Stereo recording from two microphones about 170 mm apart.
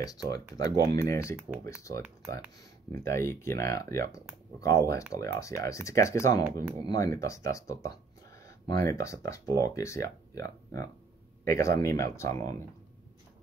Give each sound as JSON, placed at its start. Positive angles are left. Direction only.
{"t": 0.0, "sound": "speech", "side_deg": 20}